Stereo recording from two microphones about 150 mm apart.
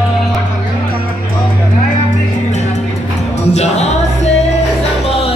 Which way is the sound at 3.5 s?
50° left (ahead or behind).